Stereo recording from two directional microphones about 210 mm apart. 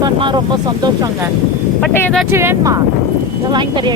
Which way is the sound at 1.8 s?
5° left (ahead or behind).